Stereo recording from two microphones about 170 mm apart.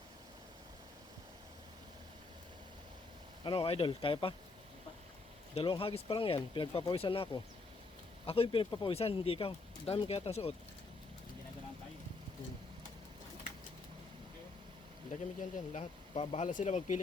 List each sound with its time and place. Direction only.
3.4 s speech: 35° left (ahead or behind)
5.5 s speech: 30° left (ahead or behind)
8.3 s speech: 35° left (ahead or behind)
15.1 s speech: 45° left (ahead or behind)